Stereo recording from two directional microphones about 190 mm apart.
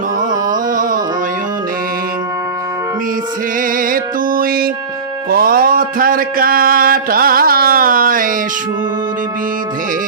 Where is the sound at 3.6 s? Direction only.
45° right (ahead or behind).